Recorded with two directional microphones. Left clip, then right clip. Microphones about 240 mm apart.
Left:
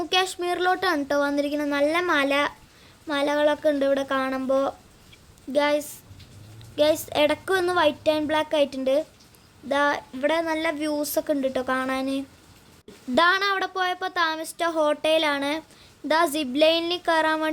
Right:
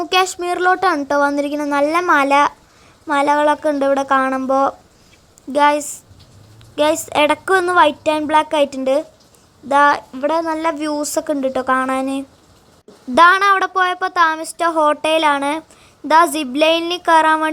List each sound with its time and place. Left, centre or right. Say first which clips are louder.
0.1 s a woman's voice: right 7 dB; centre